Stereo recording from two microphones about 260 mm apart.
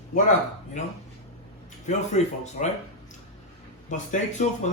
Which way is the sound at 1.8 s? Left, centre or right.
Left.